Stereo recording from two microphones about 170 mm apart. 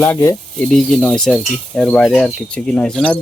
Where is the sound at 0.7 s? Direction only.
5° left (ahead or behind).